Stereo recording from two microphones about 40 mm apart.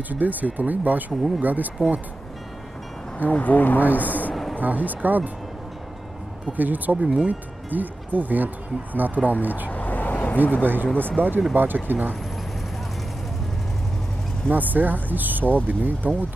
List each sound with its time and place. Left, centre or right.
0.1 s speech: right
3.3 s speech: left
4.6 s speech: right
6.5 s speech: right
9.7 s vehicle: left
10.6 s speech: right
14.5 s speech: right